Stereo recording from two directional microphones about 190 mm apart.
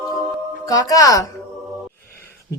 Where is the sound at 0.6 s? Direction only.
20° left (ahead or behind).